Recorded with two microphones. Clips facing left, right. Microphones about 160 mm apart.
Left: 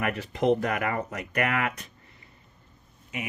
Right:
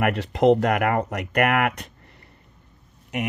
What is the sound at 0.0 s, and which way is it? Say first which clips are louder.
Speech: right 7 dB; 75° right (ahead or behind).